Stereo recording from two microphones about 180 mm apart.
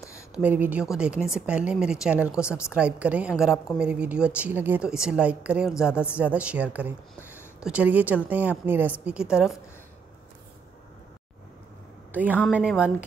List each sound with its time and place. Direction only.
0.4 s a woman's voice: 10° right (ahead or behind)
12.1 s a woman's voice: 10° right (ahead or behind)